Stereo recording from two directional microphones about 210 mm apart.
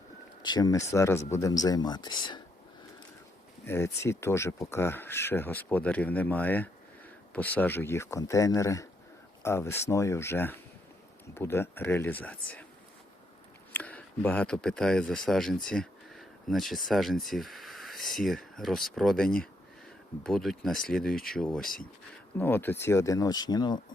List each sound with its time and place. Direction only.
0.4 s speech: 20° left (ahead or behind)
3.7 s speech: 15° left (ahead or behind)
13.7 s speech: 5° left (ahead or behind)